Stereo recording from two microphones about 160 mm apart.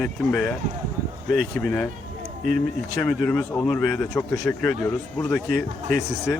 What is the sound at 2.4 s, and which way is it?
Speech, 60° right (ahead or behind).